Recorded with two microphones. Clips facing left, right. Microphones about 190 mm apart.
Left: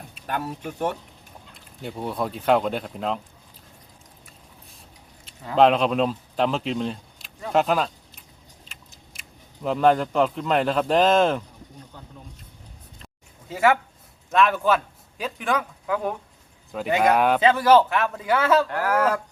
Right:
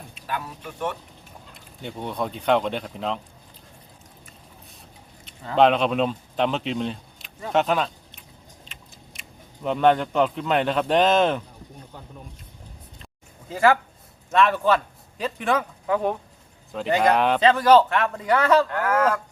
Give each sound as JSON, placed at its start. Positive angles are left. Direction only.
{"t": 0.3, "sound": "speech", "side_deg": 50}
{"t": 1.8, "sound": "a man's voice", "side_deg": 5}
{"t": 5.5, "sound": "speech", "side_deg": 0}
{"t": 9.6, "sound": "a man's voice", "side_deg": 0}
{"t": 13.5, "sound": "a man's voice", "side_deg": 10}